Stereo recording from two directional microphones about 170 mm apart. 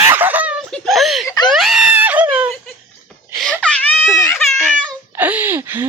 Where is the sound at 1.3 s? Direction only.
25° left (ahead or behind).